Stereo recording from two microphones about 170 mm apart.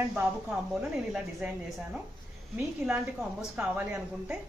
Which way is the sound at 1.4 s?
10° right (ahead or behind).